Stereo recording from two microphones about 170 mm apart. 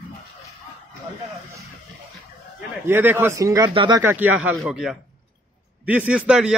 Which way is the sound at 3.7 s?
30° right (ahead or behind).